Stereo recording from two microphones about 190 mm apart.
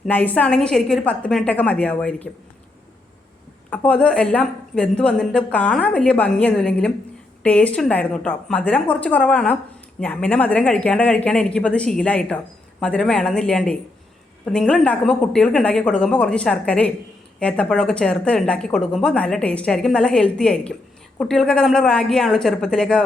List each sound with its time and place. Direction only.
0.0 s speech: 10° left (ahead or behind)
3.7 s a woman's voice: 5° left (ahead or behind)